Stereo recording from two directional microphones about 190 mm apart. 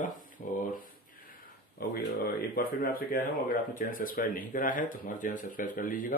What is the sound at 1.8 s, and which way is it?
Speech, 50° left (ahead or behind).